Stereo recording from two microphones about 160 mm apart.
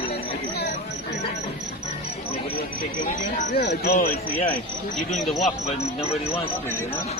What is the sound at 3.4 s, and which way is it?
Speech, 65° left (ahead or behind).